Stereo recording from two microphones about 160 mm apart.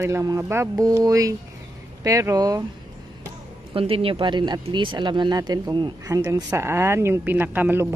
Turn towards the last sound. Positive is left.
turn(degrees=-10)  # may be behind; listen again after turning